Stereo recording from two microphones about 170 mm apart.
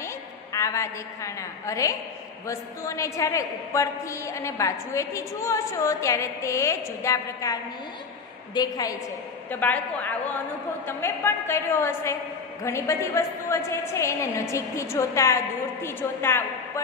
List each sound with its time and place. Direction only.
0.0 s a woman's voice: 20° left (ahead or behind)
8.5 s a woman's voice: 20° left (ahead or behind)
9.5 s a woman's voice: 10° left (ahead or behind)